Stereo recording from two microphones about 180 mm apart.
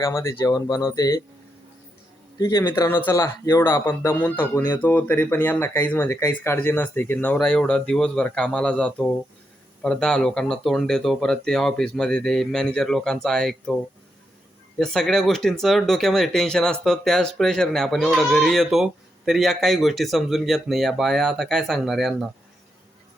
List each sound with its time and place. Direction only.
0.0 s speech: 15° left (ahead or behind)
2.4 s speech: 20° left (ahead or behind); by 13.7 s 5° left (ahead or behind)
14.8 s speech: 5° left (ahead or behind)